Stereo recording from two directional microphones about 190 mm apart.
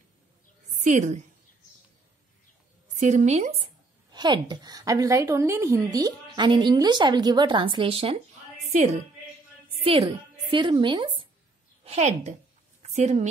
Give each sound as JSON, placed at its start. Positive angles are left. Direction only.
{"t": 0.8, "sound": "a woman's voice", "side_deg": -40}
{"t": 3.0, "sound": "a woman's voice", "side_deg": -40}